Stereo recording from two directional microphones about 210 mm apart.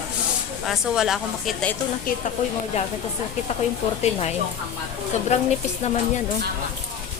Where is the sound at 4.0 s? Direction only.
30° left (ahead or behind).